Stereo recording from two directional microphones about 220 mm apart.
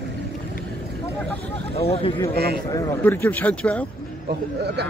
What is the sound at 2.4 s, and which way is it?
Speech, 45° right (ahead or behind).